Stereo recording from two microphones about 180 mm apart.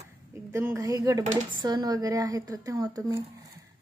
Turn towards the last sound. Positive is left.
turn(degrees=-20)  # may be behind; listen again after turning